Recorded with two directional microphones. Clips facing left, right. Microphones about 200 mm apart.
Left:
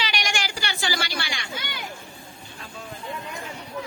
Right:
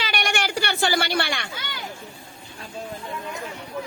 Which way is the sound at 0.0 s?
55° right (ahead or behind).